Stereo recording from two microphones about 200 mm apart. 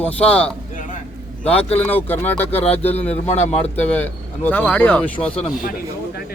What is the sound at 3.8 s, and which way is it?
Speech, 10° left (ahead or behind).